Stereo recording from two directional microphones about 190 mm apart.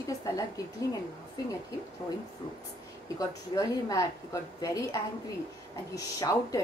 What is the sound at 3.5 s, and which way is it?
A woman's voice, 20° left (ahead or behind).